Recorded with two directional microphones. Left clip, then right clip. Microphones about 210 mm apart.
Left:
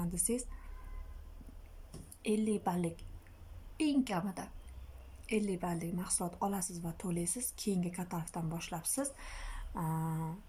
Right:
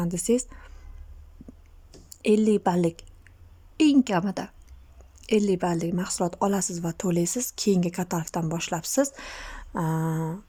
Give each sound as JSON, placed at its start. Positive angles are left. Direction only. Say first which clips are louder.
{"t": 0.0, "sound": "speech", "louder": "right 13 dB", "side_deg": -40}
{"t": 2.2, "sound": "speech", "louder": "right 13 dB", "side_deg": -45}